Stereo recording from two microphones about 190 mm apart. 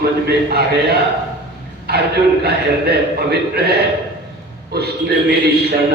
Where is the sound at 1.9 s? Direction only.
55° right (ahead or behind).